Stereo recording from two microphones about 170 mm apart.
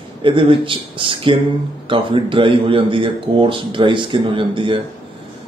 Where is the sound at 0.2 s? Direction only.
30° right (ahead or behind).